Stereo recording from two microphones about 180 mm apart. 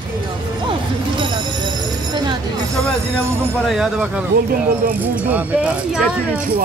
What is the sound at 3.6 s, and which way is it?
Speech, 5° right (ahead or behind).